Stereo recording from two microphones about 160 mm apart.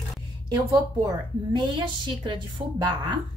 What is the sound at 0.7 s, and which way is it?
A woman's voice, 25° right (ahead or behind).